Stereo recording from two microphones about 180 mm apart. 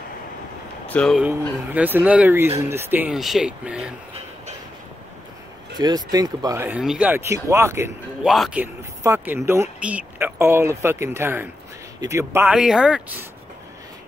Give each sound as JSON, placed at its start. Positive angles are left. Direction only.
{"t": 0.8, "sound": "speech", "side_deg": 5}
{"t": 1.7, "sound": "speech", "side_deg": -10}
{"t": 5.8, "sound": "speech", "side_deg": -20}
{"t": 8.2, "sound": "speech", "side_deg": 0}